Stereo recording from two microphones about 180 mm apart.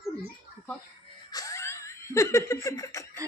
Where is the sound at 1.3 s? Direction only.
20° left (ahead or behind).